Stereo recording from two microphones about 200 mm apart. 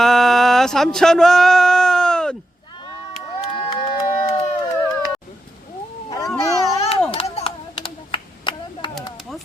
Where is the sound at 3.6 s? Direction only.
25° left (ahead or behind).